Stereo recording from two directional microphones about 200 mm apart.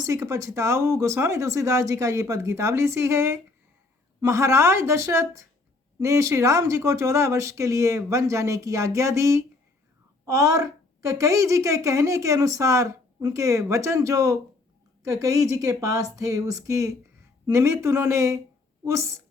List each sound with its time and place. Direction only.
0.0 s a woman's voice: 15° right (ahead or behind)